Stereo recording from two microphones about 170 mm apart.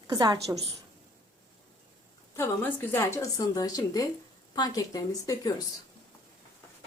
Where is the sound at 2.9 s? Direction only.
15° left (ahead or behind).